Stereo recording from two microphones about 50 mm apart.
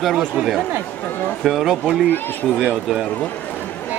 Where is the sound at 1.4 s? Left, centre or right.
Centre.